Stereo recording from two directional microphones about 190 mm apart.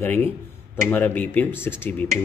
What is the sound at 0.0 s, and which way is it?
Speech, 10° left (ahead or behind).